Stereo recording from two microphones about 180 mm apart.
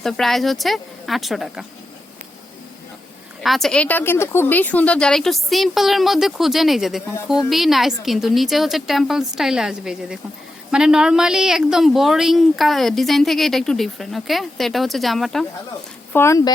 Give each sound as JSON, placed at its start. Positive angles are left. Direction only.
{"t": 0.0, "sound": "speech", "side_deg": 0}
{"t": 3.4, "sound": "speech", "side_deg": 0}
{"t": 16.1, "sound": "speech", "side_deg": 15}